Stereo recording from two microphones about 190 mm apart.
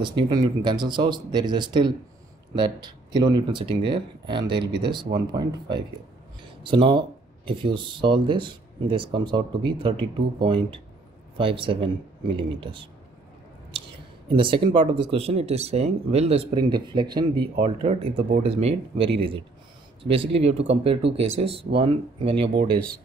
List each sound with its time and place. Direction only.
0.0 s speech: 20° right (ahead or behind)
13.8 s speech: 25° right (ahead or behind)
16.5 s speech: 20° right (ahead or behind)
22.7 s speech: 50° right (ahead or behind)